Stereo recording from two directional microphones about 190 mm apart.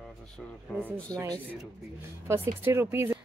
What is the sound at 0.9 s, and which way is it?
Speech, 15° right (ahead or behind).